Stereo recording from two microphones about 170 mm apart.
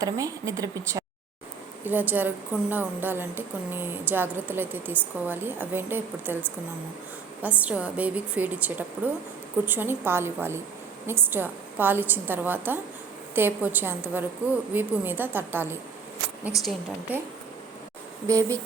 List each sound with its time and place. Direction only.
0.0 s a woman's voice: 20° right (ahead or behind)
18.3 s speech: 20° right (ahead or behind)